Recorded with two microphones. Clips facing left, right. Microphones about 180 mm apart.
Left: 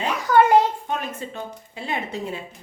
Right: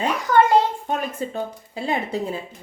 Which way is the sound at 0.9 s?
35° right (ahead or behind).